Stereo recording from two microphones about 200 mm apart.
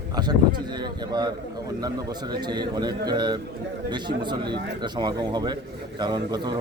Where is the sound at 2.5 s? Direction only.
20° right (ahead or behind).